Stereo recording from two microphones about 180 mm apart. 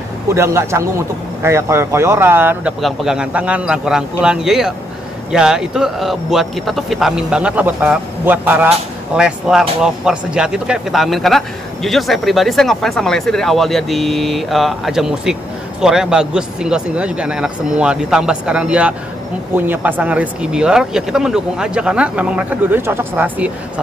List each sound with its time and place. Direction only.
0.3 s speech: 15° right (ahead or behind)